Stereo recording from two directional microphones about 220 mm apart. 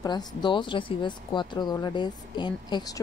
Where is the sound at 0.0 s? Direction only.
20° left (ahead or behind).